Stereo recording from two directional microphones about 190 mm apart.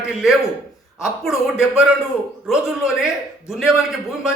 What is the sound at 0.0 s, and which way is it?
A man's voice, 5° right (ahead or behind).